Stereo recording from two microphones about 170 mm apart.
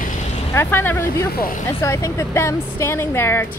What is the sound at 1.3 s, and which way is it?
Speech, 60° left (ahead or behind).